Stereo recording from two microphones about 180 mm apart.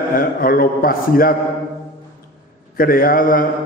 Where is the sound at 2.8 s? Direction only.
55° left (ahead or behind).